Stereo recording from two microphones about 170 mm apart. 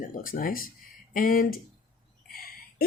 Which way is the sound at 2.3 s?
60° left (ahead or behind).